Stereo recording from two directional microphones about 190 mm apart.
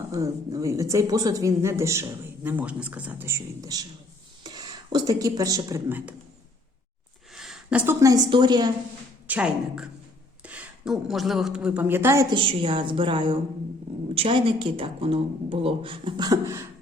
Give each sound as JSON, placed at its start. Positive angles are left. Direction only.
{"t": 0.1, "sound": "speech", "side_deg": -15}
{"t": 7.3, "sound": "a woman's voice", "side_deg": 0}
{"t": 9.2, "sound": "a woman's voice", "side_deg": -5}
{"t": 12.4, "sound": "speech", "side_deg": -25}